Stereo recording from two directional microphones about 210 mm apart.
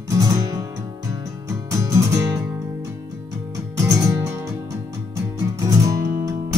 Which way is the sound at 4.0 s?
15° right (ahead or behind).